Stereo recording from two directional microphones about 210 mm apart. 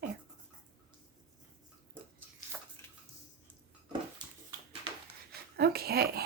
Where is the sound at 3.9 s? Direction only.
20° right (ahead or behind).